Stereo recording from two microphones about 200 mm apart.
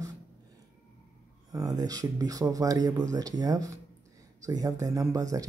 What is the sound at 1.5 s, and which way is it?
Speech, 15° right (ahead or behind).